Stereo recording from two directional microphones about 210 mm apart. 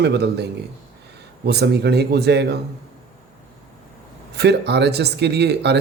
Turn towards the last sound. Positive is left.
turn(degrees=-50)  # may be behind; listen again after turning